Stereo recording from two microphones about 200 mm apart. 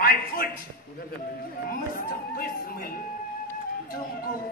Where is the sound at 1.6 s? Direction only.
45° left (ahead or behind).